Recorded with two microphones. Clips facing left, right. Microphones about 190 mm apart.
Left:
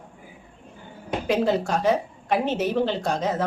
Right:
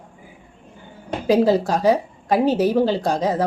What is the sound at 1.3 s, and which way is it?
A woman's voice, 35° right (ahead or behind).